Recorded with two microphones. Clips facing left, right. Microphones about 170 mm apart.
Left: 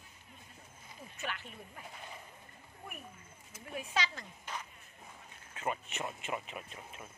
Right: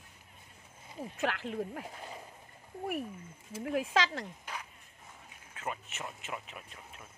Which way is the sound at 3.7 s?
90° right.